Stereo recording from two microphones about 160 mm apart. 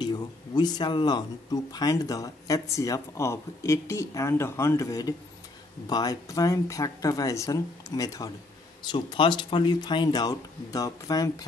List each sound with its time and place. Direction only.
0.0 s speech: 25° left (ahead or behind)